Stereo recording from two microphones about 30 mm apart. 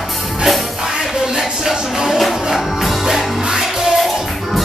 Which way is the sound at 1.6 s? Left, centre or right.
Centre.